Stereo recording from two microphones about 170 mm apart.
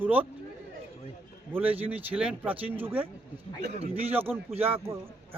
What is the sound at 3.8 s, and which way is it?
Speech, 35° right (ahead or behind).